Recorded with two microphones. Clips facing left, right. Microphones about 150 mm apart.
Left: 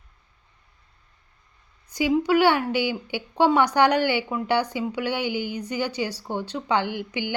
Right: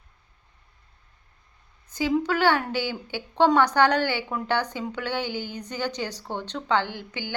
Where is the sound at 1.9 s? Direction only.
15° left (ahead or behind).